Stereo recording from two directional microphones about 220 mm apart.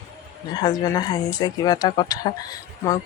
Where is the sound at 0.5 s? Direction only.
15° left (ahead or behind).